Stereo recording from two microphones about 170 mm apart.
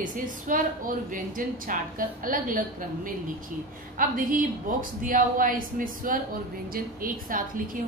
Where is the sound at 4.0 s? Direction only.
55° right (ahead or behind).